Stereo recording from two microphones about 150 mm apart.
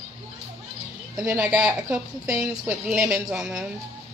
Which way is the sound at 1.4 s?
5° right (ahead or behind).